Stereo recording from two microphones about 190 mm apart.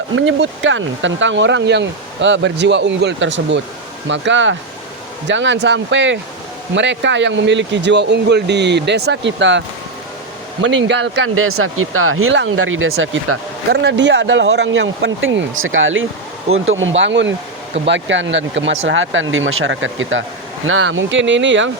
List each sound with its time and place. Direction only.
0.1 s speech: 85° right
13.7 s speech: 65° right (ahead or behind); by 16.9 s 90° right
17.0 s speech: 75° right (ahead or behind)
18.9 s speech: 90° right; by 21.7 s 75° right (ahead or behind)